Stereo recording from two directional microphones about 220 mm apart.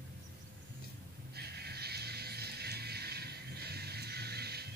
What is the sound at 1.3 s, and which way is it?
Music, 45° right (ahead or behind).